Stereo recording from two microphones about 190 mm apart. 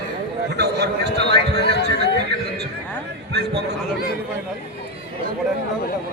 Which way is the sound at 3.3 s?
60° right (ahead or behind).